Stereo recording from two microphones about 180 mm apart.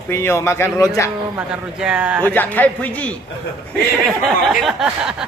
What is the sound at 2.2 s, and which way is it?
Speech, 10° left (ahead or behind).